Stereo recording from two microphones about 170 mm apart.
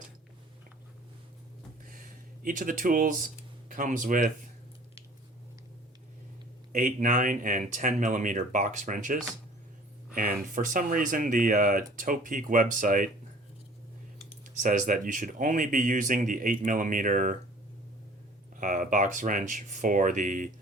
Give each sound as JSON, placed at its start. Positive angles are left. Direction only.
{"t": 1.8, "sound": "a sound", "side_deg": -55}
{"t": 3.7, "sound": "speech", "side_deg": -50}
{"t": 6.7, "sound": "speech", "side_deg": -50}
{"t": 14.6, "sound": "speech", "side_deg": -50}
{"t": 18.5, "sound": "speech", "side_deg": -50}